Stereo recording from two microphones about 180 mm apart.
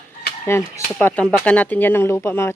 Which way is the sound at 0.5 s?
15° left (ahead or behind).